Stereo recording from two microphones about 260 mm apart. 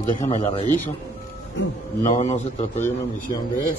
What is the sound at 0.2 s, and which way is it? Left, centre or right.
Speech, left.